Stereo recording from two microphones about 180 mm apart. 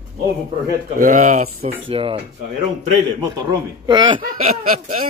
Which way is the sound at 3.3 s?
25° right (ahead or behind).